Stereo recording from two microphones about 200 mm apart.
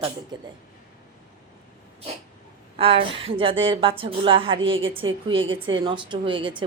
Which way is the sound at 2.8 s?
25° right (ahead or behind).